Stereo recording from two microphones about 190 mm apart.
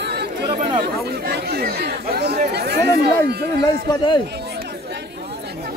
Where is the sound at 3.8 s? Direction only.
25° left (ahead or behind).